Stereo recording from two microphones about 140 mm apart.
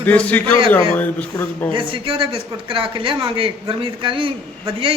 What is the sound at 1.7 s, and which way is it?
Speech, 40° right (ahead or behind).